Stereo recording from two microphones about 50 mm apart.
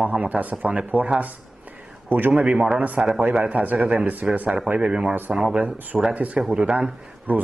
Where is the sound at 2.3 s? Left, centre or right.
Centre.